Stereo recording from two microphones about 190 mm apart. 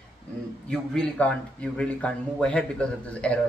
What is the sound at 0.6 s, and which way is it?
Speech, 5° left (ahead or behind).